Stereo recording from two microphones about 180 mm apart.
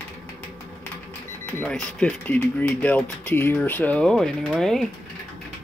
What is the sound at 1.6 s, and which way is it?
Speech, 5° left (ahead or behind).